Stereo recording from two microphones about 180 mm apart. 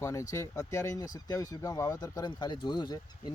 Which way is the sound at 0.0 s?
15° left (ahead or behind).